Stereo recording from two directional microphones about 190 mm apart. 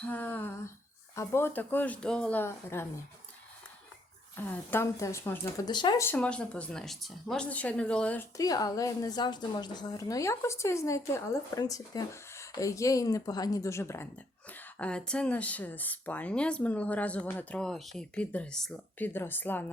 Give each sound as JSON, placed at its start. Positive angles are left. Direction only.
{"t": 0.0, "sound": "speech", "side_deg": 10}
{"t": 4.4, "sound": "speech", "side_deg": 10}
{"t": 6.1, "sound": "speech", "side_deg": 5}